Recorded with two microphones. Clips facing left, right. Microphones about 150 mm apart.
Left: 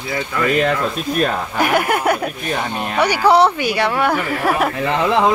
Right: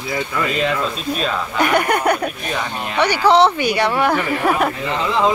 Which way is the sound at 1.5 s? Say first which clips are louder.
Right 1 dB; 5° left (ahead or behind).